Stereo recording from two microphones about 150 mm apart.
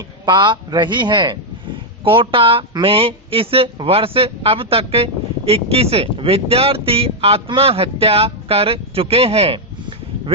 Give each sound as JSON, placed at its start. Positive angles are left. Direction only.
{"t": 0.3, "sound": "speech", "side_deg": -30}